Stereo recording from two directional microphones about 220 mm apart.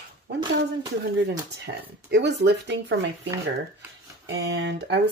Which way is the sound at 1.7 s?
50° right (ahead or behind).